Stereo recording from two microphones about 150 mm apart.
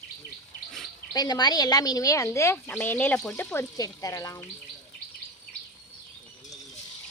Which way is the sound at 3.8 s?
25° left (ahead or behind).